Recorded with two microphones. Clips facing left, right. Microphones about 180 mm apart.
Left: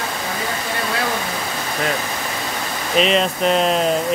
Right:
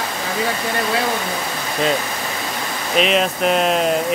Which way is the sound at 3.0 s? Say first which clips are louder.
Even; centre (ahead or behind).